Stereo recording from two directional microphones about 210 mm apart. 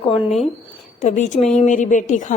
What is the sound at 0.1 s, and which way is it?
A woman's voice, 25° left (ahead or behind).